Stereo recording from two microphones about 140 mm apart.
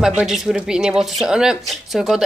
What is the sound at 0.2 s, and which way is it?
Speech, centre (ahead or behind).